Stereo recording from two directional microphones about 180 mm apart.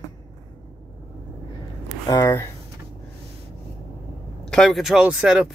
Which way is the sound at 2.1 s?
20° left (ahead or behind).